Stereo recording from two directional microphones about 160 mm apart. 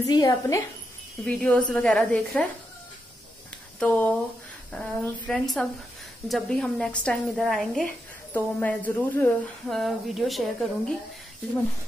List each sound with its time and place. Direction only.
0.0 s a woman's voice: 25° left (ahead or behind)
1.2 s speech: 5° left (ahead or behind)
3.8 s a woman's voice: 10° left (ahead or behind)